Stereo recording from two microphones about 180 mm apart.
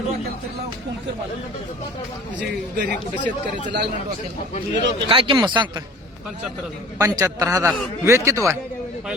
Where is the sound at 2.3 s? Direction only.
70° right (ahead or behind).